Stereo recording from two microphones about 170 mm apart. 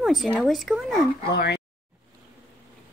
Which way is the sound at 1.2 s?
75° left (ahead or behind).